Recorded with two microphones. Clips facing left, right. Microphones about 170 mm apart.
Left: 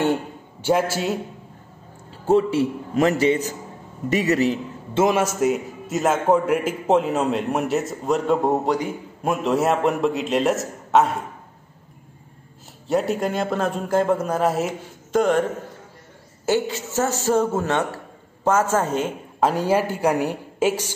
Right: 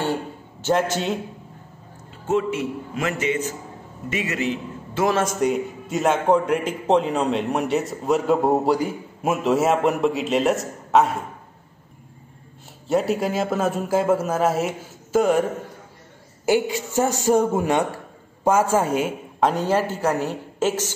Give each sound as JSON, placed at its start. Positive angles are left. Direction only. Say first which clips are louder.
{"t": 0.0, "sound": "a man's voice", "louder": "left 3 dB", "side_deg": 15}
{"t": 2.2, "sound": "a man's voice", "louder": "left 4 dB", "side_deg": 35}
{"t": 5.1, "sound": "a man's voice", "louder": "left 1 dB", "side_deg": 5}
{"t": 12.8, "sound": "a man's voice", "louder": "even", "side_deg": 0}
{"t": 16.4, "sound": "a man's voice", "louder": "right 1 dB", "side_deg": -15}
{"t": 19.4, "sound": "a woman's voice", "louder": "left 1 dB", "side_deg": 10}